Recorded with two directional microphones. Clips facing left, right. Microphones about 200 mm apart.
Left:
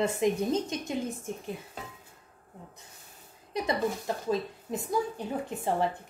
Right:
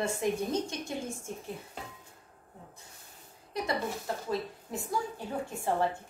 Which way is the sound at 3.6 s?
20° left (ahead or behind).